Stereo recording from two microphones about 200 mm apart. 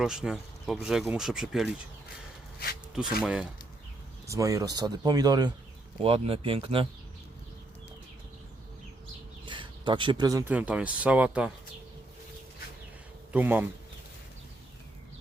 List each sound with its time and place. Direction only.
0.0 s speech: 5° right (ahead or behind)
3.2 s speech: 5° right (ahead or behind)
4.3 s speech: 15° right (ahead or behind)
9.5 s speech: 25° right (ahead or behind); by 11.5 s 5° right (ahead or behind)
13.3 s speech: 10° right (ahead or behind)